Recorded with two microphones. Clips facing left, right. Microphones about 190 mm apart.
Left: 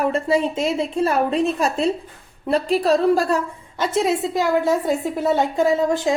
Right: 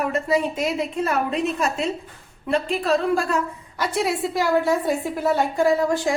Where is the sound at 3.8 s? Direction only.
20° left (ahead or behind).